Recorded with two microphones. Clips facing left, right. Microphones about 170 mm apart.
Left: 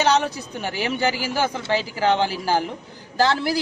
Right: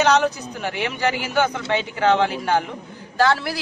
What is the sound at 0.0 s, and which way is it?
Speech, 35° left (ahead or behind).